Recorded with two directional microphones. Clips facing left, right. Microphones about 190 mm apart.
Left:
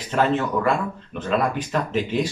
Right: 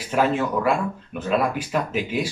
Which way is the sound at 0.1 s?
10° right (ahead or behind).